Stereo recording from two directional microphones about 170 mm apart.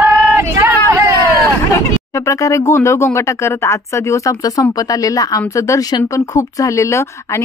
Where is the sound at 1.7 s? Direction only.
20° left (ahead or behind).